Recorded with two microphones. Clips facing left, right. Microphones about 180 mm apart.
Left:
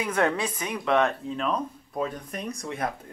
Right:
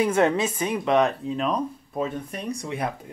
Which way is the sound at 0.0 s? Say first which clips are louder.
Right 5 dB; 25° right (ahead or behind).